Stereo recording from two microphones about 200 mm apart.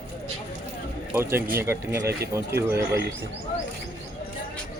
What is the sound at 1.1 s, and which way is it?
Speech, 10° right (ahead or behind).